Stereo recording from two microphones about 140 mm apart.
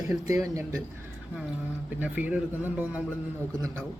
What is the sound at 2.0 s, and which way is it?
Speech, 10° right (ahead or behind).